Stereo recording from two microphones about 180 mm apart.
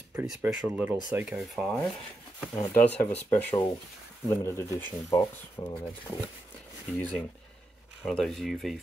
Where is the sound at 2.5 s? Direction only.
10° left (ahead or behind).